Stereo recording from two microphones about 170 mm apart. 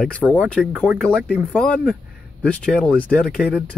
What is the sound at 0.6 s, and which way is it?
Speech, 10° right (ahead or behind).